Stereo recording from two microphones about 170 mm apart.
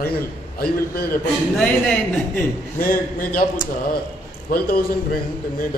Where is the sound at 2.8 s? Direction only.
55° left (ahead or behind).